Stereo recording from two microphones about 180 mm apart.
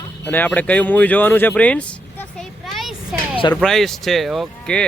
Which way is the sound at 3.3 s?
30° left (ahead or behind).